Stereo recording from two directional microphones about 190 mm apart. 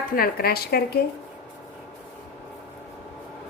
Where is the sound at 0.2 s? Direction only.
55° left (ahead or behind).